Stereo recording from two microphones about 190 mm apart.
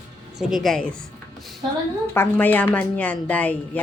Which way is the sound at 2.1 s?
10° left (ahead or behind).